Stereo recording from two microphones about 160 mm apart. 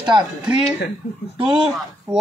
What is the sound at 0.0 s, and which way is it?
Speech, 30° right (ahead or behind).